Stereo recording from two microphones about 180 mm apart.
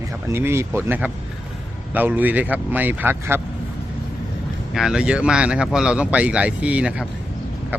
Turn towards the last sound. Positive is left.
turn(degrees=-5)  # may be behind; listen again after turning